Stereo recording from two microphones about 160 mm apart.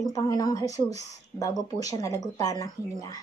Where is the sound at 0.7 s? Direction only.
45° right (ahead or behind).